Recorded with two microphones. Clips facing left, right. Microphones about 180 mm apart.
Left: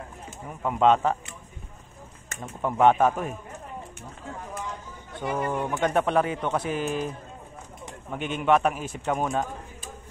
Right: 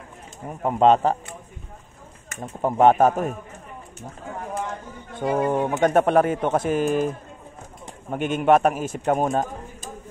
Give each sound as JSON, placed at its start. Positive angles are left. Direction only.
{"t": 0.5, "sound": "speech", "side_deg": -35}
{"t": 2.6, "sound": "speech", "side_deg": -40}
{"t": 4.4, "sound": "a man's voice", "side_deg": -55}
{"t": 8.1, "sound": "a man's voice", "side_deg": -50}